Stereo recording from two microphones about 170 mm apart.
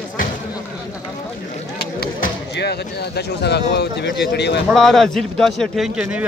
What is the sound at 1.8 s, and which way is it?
Speech, 65° left (ahead or behind).